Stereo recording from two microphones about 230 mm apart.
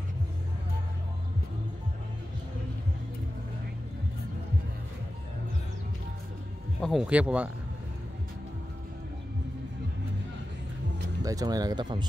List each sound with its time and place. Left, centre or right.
6.8 s speech: centre
11.2 s speech: centre